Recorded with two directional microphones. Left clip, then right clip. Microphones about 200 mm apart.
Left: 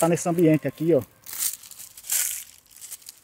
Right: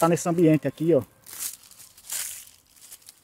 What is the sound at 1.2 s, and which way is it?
Crumpling, 50° left (ahead or behind).